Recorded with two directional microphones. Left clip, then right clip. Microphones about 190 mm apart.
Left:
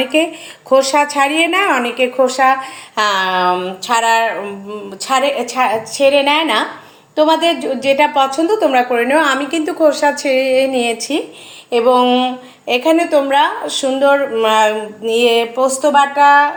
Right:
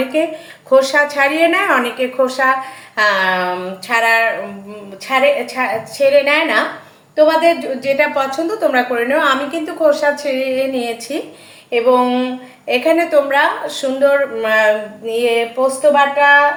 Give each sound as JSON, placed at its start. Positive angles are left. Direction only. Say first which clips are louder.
{"t": 0.7, "sound": "a woman's voice", "louder": "even", "side_deg": 30}
{"t": 3.9, "sound": "speech", "louder": "even", "side_deg": 0}
{"t": 5.5, "sound": "a woman's voice", "louder": "left 3 dB", "side_deg": 30}